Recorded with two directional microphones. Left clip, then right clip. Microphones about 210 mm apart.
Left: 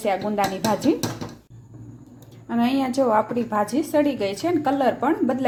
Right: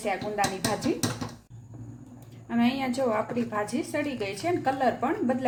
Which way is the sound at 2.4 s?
25° left (ahead or behind).